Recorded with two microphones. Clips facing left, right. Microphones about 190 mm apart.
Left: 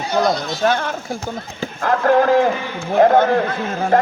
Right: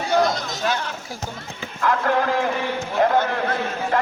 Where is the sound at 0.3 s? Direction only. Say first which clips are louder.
Left 6 dB; 50° left (ahead or behind).